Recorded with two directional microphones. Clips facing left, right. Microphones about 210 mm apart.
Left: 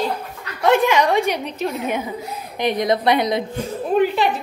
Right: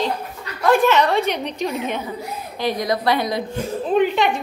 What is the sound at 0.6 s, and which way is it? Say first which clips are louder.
A woman's voice: even; 15° left (ahead or behind).